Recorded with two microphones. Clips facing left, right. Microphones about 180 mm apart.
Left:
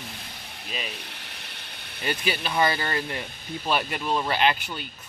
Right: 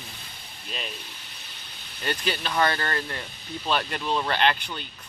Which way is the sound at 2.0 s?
5° left (ahead or behind).